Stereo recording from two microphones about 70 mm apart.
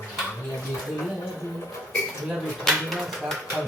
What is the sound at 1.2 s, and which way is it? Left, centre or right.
Music, left.